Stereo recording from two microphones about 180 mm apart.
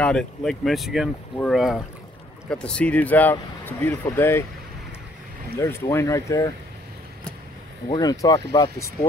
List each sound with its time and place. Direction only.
0.0 s speech: 5° left (ahead or behind)
5.6 s speech: 15° left (ahead or behind)
7.9 s speech: 20° left (ahead or behind)